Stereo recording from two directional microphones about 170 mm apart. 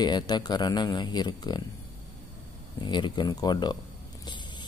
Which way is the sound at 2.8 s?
25° left (ahead or behind).